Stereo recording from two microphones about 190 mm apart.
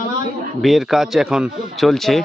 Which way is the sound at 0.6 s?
Centre (ahead or behind).